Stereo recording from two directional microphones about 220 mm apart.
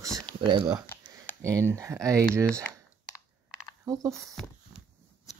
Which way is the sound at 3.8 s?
15° right (ahead or behind).